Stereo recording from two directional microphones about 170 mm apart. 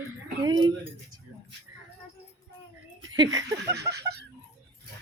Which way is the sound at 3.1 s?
25° right (ahead or behind).